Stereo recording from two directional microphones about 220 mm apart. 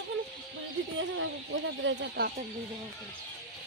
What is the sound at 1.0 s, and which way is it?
Speech, 60° right (ahead or behind).